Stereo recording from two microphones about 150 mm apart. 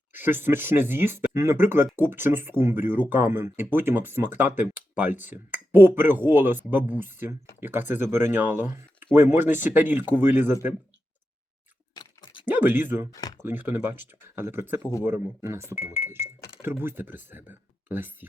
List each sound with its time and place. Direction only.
0.1 s speech: 15° right (ahead or behind)
11.9 s a sound: 30° left (ahead or behind)
12.5 s speech: 10° right (ahead or behind)